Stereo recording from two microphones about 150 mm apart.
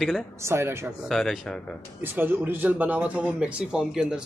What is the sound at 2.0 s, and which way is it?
Speech, 15° right (ahead or behind).